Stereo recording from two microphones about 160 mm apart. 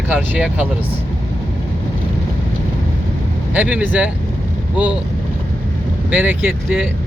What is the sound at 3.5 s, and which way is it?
Speech, 10° right (ahead or behind).